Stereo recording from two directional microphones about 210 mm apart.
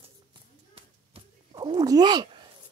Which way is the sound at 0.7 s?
25° right (ahead or behind).